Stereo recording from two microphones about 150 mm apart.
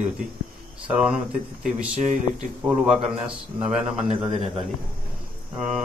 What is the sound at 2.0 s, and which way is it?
Speech, 55° right (ahead or behind).